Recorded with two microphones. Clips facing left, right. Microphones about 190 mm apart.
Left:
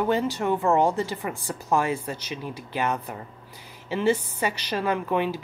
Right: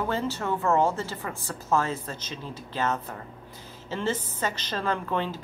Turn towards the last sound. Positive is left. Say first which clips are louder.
# left 4 dB
turn(degrees=10)  # may be behind; listen again after turning